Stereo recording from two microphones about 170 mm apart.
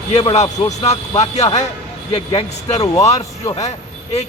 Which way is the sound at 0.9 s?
40° left (ahead or behind).